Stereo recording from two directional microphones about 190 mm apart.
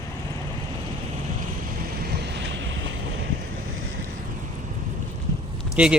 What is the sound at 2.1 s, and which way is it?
Waves, 65° right (ahead or behind).